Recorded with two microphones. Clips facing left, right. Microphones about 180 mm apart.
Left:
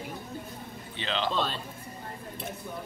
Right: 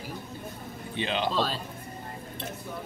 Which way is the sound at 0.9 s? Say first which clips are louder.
Right 2 dB; 15° right (ahead or behind).